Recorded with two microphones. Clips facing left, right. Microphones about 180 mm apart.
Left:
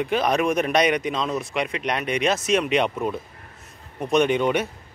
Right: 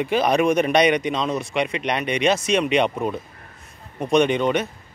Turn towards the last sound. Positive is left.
turn(degrees=10)  # may be behind; listen again after turning